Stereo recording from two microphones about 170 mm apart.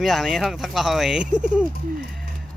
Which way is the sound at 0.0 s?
Centre (ahead or behind).